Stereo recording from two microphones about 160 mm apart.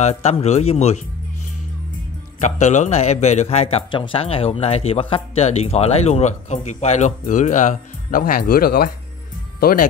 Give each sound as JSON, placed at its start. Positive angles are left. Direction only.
{"t": 0.0, "sound": "a man's voice", "side_deg": 45}
{"t": 2.4, "sound": "a man's voice", "side_deg": 45}